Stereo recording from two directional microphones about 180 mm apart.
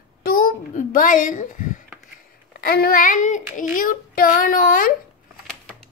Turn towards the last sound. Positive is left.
turn(degrees=50)  # may be behind; listen again after turning